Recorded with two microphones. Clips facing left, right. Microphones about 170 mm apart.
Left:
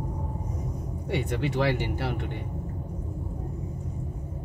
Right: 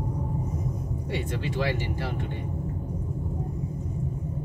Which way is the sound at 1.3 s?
65° left (ahead or behind).